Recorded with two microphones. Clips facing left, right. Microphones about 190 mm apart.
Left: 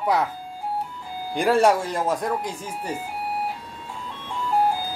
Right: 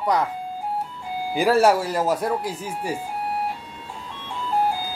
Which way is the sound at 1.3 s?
5° right (ahead or behind).